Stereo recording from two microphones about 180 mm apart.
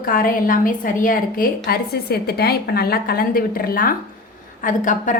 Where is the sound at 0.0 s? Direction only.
50° left (ahead or behind).